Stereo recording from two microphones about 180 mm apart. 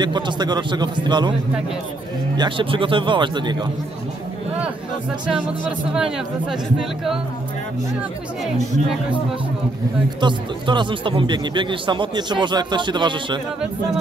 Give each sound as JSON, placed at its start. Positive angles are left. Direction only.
{"t": 0.0, "sound": "speech", "side_deg": -25}
{"t": 2.3, "sound": "speech", "side_deg": -25}
{"t": 5.2, "sound": "speech", "side_deg": -5}
{"t": 10.2, "sound": "speech", "side_deg": -25}